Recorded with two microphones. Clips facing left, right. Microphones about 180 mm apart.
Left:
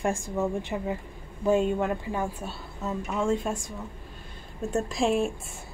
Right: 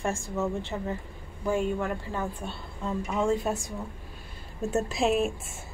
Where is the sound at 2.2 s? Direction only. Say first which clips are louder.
Left 2 dB; 5° left (ahead or behind).